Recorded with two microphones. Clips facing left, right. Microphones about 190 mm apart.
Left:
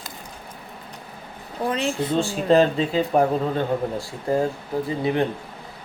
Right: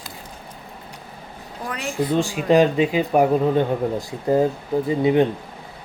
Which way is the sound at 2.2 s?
15° right (ahead or behind).